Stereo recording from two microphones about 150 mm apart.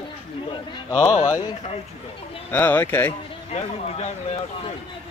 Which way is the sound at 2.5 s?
15° left (ahead or behind).